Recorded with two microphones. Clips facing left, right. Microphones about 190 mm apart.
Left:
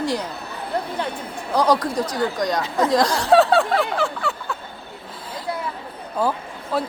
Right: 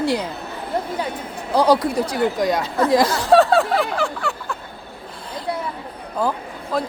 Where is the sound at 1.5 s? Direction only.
10° right (ahead or behind).